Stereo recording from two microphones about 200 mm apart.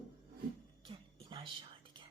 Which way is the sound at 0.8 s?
25° right (ahead or behind).